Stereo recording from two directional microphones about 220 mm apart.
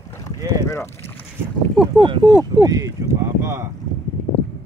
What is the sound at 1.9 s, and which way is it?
Speech, 20° right (ahead or behind).